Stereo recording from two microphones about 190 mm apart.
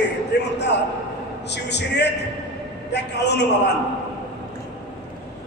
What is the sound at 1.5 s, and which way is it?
A man's voice, 65° left (ahead or behind).